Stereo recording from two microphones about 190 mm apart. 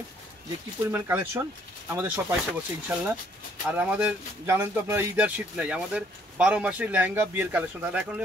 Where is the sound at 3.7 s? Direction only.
10° right (ahead or behind).